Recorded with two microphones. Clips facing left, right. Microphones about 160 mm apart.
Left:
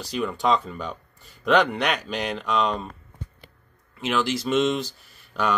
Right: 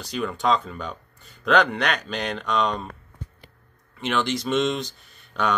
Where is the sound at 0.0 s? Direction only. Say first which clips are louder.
Even; centre (ahead or behind).